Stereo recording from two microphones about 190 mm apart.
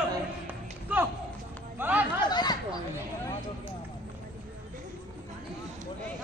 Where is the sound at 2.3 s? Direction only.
20° left (ahead or behind).